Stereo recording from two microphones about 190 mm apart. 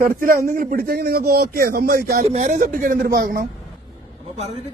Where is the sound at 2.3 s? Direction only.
35° right (ahead or behind); by 3.4 s 55° right (ahead or behind).